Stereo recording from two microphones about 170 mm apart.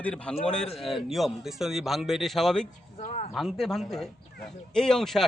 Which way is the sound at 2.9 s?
40° left (ahead or behind).